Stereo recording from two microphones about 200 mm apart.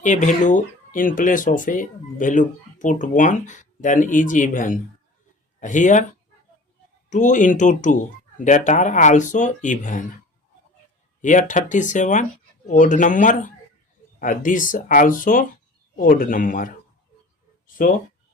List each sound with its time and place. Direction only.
0.0 s speech: 40° left (ahead or behind)
7.1 s speech: 40° left (ahead or behind)
11.2 s speech: 40° left (ahead or behind)
17.8 s speech: 45° left (ahead or behind)